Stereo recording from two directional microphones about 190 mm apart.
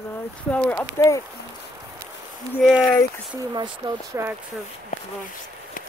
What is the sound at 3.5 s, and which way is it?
Speech, 20° right (ahead or behind).